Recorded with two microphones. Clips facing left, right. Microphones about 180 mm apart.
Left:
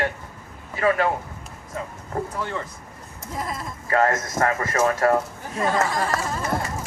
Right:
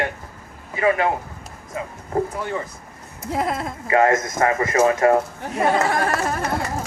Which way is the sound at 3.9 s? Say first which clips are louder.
Right 4 dB; 15° right (ahead or behind).